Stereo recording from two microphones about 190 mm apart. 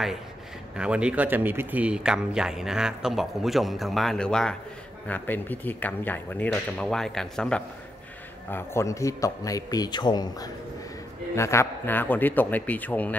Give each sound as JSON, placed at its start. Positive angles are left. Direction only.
{"t": 0.7, "sound": "a man's voice", "side_deg": -5}